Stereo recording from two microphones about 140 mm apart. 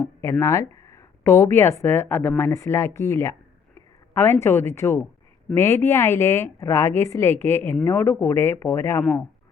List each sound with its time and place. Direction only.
0.2 s a woman's voice: 20° left (ahead or behind)